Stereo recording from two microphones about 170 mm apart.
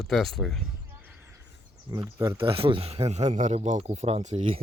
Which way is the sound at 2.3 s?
35° right (ahead or behind).